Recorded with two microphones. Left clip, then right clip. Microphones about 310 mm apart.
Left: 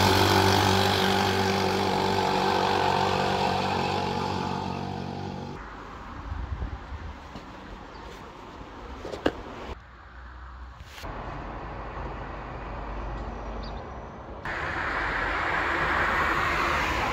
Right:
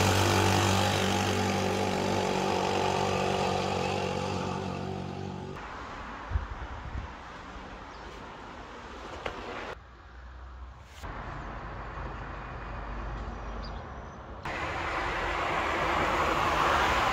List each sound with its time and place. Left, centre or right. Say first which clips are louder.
0.0 s vehicle: left 5 dB; centre
14.4 s vehicle: left 3 dB; right